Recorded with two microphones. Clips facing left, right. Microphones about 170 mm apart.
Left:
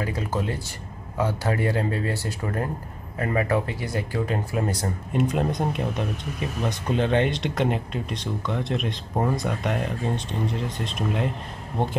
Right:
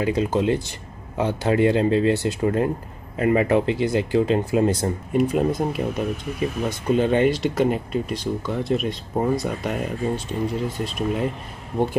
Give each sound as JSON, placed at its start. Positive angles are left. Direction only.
{"t": 0.0, "sound": "speech", "side_deg": -20}
{"t": 5.1, "sound": "speech", "side_deg": -5}